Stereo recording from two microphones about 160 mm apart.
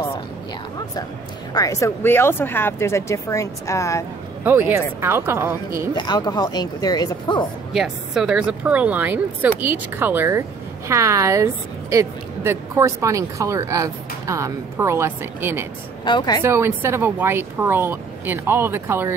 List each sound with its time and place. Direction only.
1.5 s speech: 20° left (ahead or behind)
4.5 s speech: 15° right (ahead or behind)
5.9 s speech: 25° left (ahead or behind)
7.7 s a woman's voice: centre (ahead or behind)
16.0 s speech: 30° left (ahead or behind)
16.4 s speech: 15° right (ahead or behind)